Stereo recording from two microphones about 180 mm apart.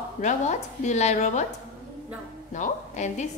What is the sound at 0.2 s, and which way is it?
A woman's voice, 40° left (ahead or behind).